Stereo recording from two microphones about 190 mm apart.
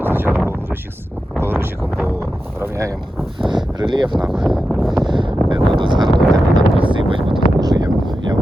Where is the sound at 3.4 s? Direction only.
25° right (ahead or behind).